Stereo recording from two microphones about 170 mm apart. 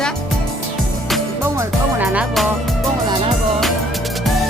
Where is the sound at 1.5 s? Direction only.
10° right (ahead or behind).